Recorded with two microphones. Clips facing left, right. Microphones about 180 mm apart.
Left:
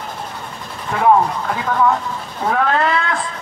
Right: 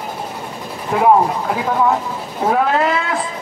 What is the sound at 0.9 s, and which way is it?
A man's voice, 20° right (ahead or behind).